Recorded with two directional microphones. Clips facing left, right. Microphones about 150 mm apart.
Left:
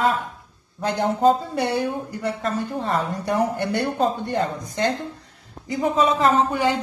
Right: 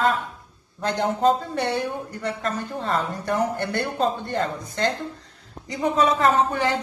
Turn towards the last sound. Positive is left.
turn(degrees=15)  # may be behind; listen again after turning